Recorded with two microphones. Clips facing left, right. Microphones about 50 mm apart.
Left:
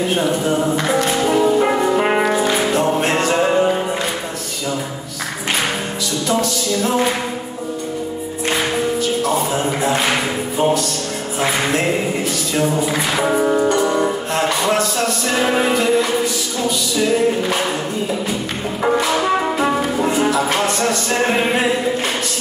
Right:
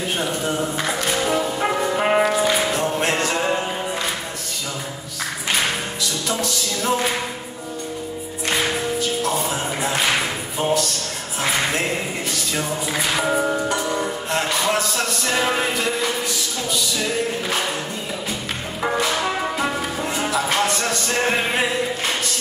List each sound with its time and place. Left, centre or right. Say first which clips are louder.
0.1 s music: left 6 dB; centre
6.2 s music: left 8 dB; centre
9.2 s music: left 5 dB; centre
12.5 s music: left 7 dB; centre
13.2 s music: left 7 dB; centre
18.8 s music: left 5 dB; centre